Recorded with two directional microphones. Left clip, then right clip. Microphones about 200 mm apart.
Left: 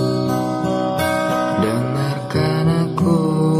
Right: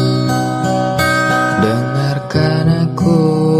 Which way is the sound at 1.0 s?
35° right (ahead or behind).